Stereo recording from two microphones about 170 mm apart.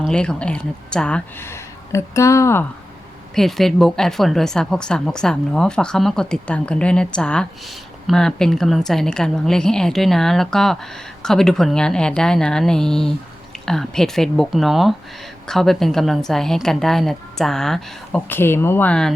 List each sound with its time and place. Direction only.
0.1 s speech: 5° left (ahead or behind)
3.3 s a woman's voice: centre (ahead or behind)